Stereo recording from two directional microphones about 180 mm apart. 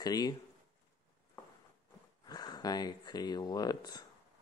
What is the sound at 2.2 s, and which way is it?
Speech, 20° left (ahead or behind).